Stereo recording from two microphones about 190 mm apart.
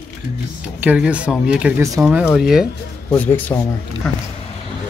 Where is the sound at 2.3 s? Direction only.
Centre (ahead or behind).